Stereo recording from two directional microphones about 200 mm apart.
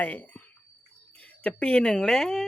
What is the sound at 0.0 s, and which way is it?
Speech, 10° left (ahead or behind).